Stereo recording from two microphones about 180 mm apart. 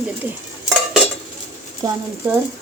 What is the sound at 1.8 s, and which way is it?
Speech, 20° right (ahead or behind).